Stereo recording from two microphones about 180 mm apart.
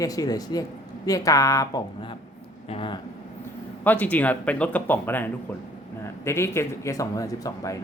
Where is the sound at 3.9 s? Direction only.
10° left (ahead or behind).